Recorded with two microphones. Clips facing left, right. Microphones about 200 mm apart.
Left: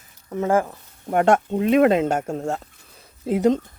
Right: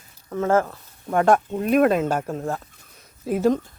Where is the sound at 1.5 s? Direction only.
85° left.